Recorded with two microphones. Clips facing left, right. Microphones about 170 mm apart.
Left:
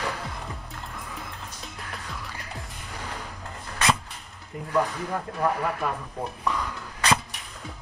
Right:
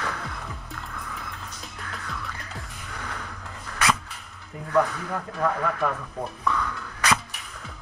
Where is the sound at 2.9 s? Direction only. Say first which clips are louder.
Even; 35° left (ahead or behind).